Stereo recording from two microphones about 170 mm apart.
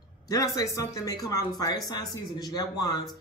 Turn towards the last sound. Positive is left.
turn(degrees=25)  # may be behind; listen again after turning